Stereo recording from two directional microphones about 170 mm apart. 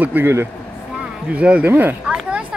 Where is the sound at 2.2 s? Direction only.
5° right (ahead or behind).